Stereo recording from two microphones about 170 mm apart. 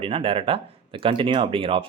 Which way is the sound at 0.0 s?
35° right (ahead or behind).